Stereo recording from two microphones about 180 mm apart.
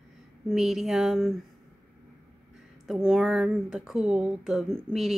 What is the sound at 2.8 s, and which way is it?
Speech, centre (ahead or behind).